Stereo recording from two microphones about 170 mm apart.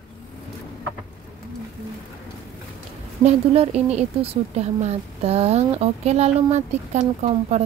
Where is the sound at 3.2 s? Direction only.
40° right (ahead or behind).